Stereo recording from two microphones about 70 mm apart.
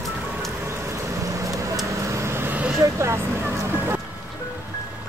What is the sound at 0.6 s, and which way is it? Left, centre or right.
Vehicle, right.